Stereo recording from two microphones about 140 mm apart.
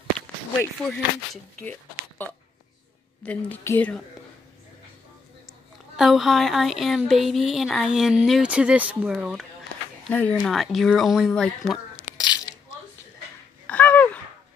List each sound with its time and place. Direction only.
0.8 s a woman's voice: 5° left (ahead or behind)
5.9 s speech: centre (ahead or behind)
10.0 s speech: 10° left (ahead or behind)
10.4 s speech: centre (ahead or behind)
12.2 s a sound: 30° left (ahead or behind)
13.7 s a sound: 10° left (ahead or behind)